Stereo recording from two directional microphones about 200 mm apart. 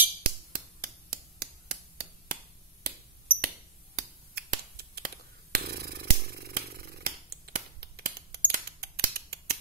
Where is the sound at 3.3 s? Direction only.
10° right (ahead or behind).